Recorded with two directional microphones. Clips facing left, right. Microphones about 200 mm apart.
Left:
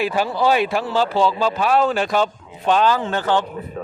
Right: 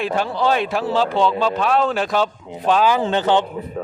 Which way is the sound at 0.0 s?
5° left (ahead or behind).